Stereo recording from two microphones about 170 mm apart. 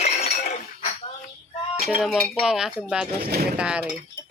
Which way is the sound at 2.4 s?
5° right (ahead or behind).